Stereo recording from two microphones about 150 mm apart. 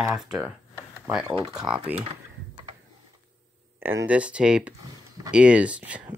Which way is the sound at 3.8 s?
15° right (ahead or behind).